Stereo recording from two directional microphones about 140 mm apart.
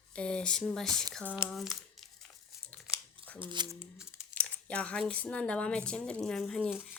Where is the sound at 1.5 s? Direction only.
Centre (ahead or behind).